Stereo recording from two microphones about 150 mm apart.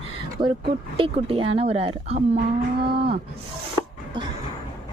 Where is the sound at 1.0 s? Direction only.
40° right (ahead or behind).